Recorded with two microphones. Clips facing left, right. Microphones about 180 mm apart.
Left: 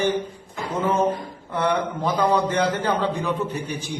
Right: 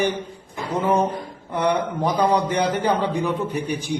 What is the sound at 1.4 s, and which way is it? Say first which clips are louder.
A man's voice: right 1 dB; 15° right (ahead or behind).